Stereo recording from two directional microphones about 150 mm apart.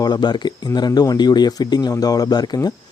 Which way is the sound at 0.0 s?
30° left (ahead or behind).